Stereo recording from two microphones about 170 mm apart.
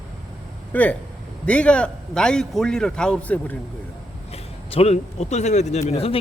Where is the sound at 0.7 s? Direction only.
10° left (ahead or behind).